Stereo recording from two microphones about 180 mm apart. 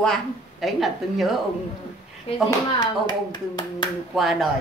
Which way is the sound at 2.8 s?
25° left (ahead or behind).